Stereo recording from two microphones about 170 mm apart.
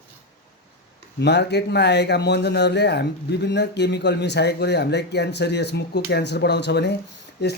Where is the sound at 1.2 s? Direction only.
80° left.